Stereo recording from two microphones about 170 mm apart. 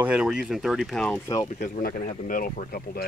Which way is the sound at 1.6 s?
50° left (ahead or behind).